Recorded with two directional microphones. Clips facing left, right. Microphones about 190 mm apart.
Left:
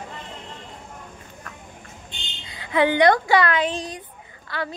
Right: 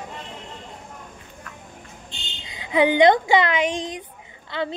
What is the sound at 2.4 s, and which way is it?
Speech, 20° right (ahead or behind).